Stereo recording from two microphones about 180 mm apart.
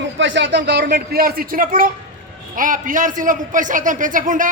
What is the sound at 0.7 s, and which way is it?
A man's voice, 65° right (ahead or behind).